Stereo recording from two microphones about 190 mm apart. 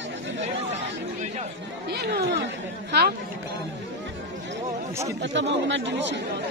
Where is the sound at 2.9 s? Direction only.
60° right (ahead or behind).